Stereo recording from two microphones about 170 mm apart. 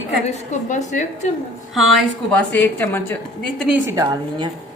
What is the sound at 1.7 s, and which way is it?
A woman's voice, centre (ahead or behind).